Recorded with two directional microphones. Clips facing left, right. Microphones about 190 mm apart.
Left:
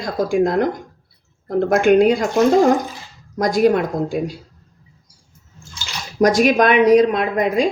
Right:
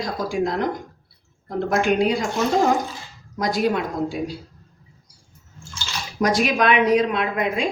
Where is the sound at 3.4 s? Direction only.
45° left (ahead or behind).